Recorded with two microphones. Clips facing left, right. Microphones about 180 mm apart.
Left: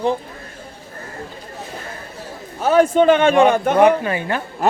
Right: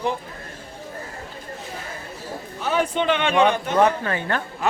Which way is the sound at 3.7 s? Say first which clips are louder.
Left 5 dB; 15° left (ahead or behind).